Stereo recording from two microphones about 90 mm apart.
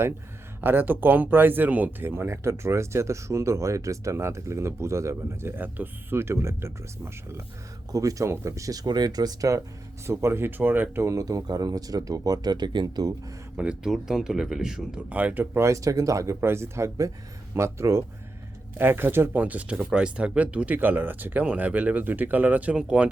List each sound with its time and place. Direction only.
0.6 s speech: 20° right (ahead or behind); by 9.6 s 45° right (ahead or behind)
10.1 s speech: 30° right (ahead or behind); by 13.1 s 45° right (ahead or behind)
13.6 s speech: 10° right (ahead or behind)
15.5 s speech: 35° right (ahead or behind); by 23.0 s 10° right (ahead or behind)